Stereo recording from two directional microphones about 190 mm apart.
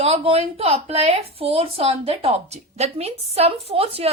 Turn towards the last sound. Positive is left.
turn(degrees=-30)  # may be behind; listen again after turning